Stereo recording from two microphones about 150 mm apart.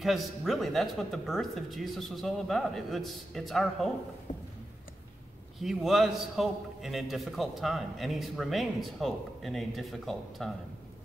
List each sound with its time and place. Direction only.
0.0 s a man's voice: centre (ahead or behind)
4.3 s a sound: 50° left (ahead or behind)
5.6 s a man's voice: centre (ahead or behind)